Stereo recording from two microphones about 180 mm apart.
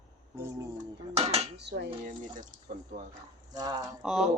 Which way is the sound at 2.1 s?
45° right (ahead or behind).